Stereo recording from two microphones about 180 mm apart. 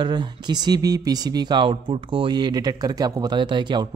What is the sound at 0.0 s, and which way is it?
A man's voice, 25° right (ahead or behind).